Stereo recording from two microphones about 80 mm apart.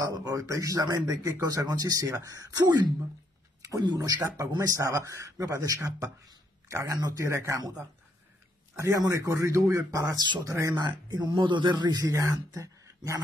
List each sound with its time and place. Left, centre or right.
0.0 s speech: right
3.8 s speech: right
4.6 s speech: right
8.7 s speech: right
10.8 s speech: right
12.1 s speech: right